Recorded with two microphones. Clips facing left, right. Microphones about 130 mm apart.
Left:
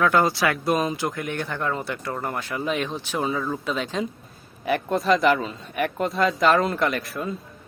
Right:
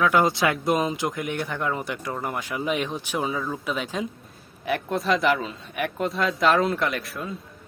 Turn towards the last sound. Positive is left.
turn(degrees=0)  # may be behind; listen again after turning